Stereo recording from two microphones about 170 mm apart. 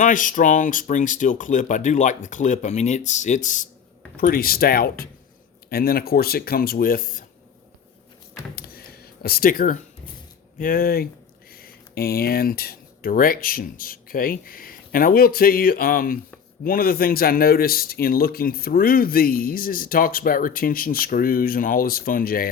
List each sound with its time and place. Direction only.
0.0 s a man's voice: 50° left (ahead or behind)
8.5 s a sound: 60° left (ahead or behind)
10.6 s a man's voice: 55° left (ahead or behind)